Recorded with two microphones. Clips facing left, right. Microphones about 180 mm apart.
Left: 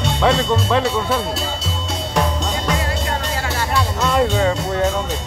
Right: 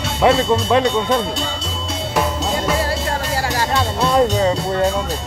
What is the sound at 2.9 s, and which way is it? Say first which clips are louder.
Music: right 2 dB; 35° right (ahead or behind).